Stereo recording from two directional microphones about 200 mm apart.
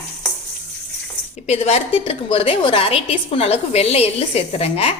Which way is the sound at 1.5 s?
30° left (ahead or behind).